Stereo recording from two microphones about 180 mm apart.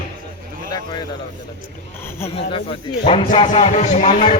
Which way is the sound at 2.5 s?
30° left (ahead or behind).